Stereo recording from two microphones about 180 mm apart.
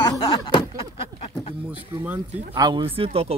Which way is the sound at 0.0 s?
25° left (ahead or behind).